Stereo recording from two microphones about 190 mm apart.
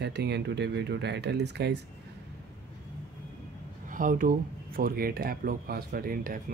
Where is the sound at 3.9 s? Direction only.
45° right (ahead or behind).